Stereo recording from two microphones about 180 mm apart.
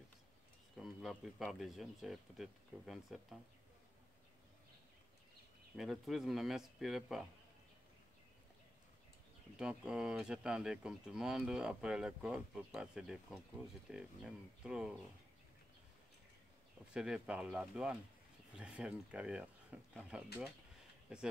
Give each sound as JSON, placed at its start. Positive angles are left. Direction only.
{"t": 0.7, "sound": "speech", "side_deg": 0}
{"t": 5.8, "sound": "speech", "side_deg": 0}
{"t": 9.6, "sound": "speech", "side_deg": -5}
{"t": 16.9, "sound": "speech", "side_deg": -5}